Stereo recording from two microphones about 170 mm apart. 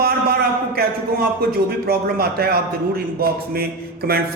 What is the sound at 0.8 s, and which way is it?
A man's voice, 65° right (ahead or behind).